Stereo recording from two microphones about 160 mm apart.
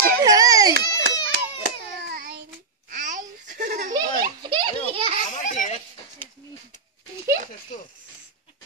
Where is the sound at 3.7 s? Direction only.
50° right (ahead or behind).